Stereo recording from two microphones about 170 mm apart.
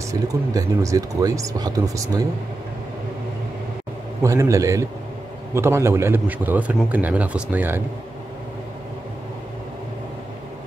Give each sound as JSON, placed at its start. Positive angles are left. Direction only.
{"t": 0.1, "sound": "speech", "side_deg": -20}
{"t": 4.2, "sound": "a man's voice", "side_deg": -20}